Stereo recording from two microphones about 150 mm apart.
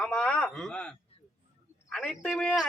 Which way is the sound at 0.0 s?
5° left (ahead or behind).